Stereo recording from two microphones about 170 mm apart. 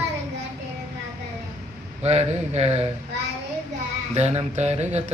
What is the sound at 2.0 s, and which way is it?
Mantra, 40° right (ahead or behind).